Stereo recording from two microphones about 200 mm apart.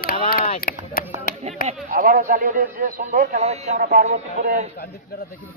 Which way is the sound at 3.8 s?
50° right (ahead or behind).